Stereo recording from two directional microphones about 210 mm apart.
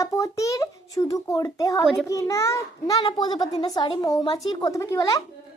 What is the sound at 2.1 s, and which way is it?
A child's voice, 15° left (ahead or behind).